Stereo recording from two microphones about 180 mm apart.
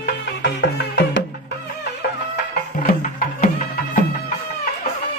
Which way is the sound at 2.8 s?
50° left (ahead or behind).